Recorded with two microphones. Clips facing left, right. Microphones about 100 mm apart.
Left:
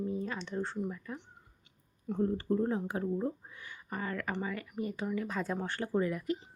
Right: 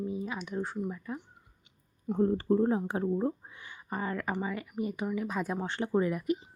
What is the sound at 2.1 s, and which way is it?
Speech, 35° right (ahead or behind).